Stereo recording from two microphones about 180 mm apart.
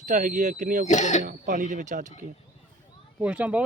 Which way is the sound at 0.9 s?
40° left (ahead or behind).